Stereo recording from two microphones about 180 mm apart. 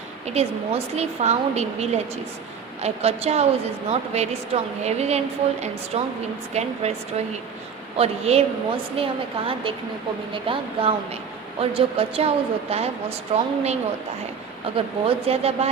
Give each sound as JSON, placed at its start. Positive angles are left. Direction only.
{"t": 0.3, "sound": "a woman's voice", "side_deg": -35}
{"t": 7.9, "sound": "a woman's voice", "side_deg": -35}
{"t": 14.8, "sound": "a woman's voice", "side_deg": -30}